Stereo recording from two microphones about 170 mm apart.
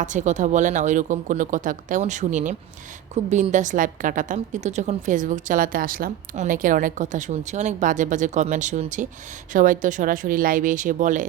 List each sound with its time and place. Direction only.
0.0 s a woman's voice: 45° right (ahead or behind)